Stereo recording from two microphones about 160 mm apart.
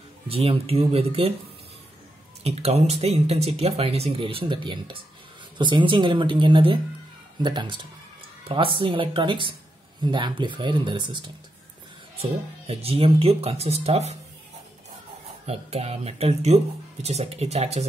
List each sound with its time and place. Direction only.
0.3 s speech: 40° right (ahead or behind)
2.4 s speech: 40° right (ahead or behind)
15.4 s speech: 40° right (ahead or behind)